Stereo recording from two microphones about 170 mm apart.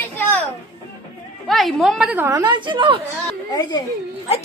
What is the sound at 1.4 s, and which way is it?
Speech, centre (ahead or behind).